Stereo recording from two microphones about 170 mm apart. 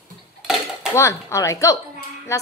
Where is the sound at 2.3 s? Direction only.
15° left (ahead or behind).